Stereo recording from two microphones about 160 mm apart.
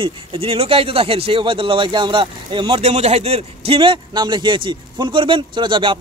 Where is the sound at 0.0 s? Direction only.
35° right (ahead or behind).